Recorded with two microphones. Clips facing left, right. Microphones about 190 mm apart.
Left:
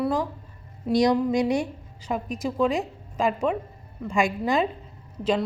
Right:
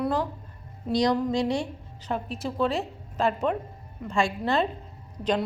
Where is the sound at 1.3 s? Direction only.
20° left (ahead or behind).